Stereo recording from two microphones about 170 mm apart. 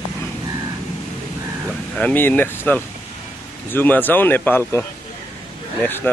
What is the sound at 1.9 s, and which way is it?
Speech, 10° left (ahead or behind).